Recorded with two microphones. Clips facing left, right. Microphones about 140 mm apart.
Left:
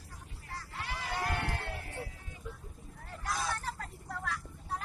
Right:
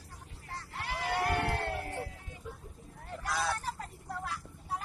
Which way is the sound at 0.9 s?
65° right (ahead or behind).